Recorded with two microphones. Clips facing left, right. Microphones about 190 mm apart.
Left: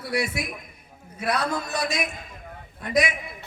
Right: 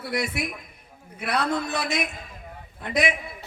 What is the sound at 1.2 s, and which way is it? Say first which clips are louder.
A man's voice: even; 60° right (ahead or behind).